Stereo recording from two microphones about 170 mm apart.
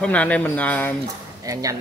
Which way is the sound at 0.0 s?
10° left (ahead or behind).